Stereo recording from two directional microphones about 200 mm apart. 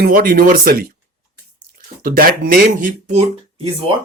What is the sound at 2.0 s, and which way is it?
Speech, 45° right (ahead or behind).